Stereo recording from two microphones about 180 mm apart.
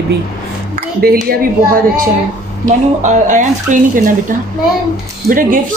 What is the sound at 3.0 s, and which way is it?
Speech, 45° right (ahead or behind).